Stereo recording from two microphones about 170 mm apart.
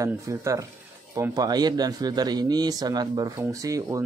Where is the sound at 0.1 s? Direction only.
15° right (ahead or behind).